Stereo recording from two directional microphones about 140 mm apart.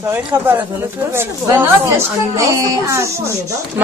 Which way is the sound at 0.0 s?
15° right (ahead or behind).